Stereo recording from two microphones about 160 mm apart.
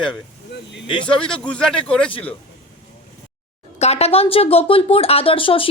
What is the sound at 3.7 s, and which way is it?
Speech, 40° left (ahead or behind).